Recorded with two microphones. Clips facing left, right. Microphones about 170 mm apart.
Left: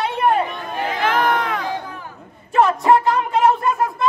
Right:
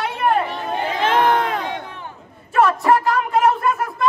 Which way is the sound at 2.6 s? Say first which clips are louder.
Left 1 dB; 20° left (ahead or behind).